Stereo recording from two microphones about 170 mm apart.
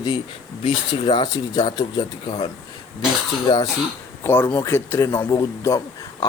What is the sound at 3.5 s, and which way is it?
Speech, 25° left (ahead or behind).